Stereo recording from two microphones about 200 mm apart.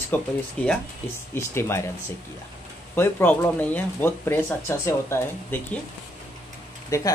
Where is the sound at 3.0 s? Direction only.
10° left (ahead or behind).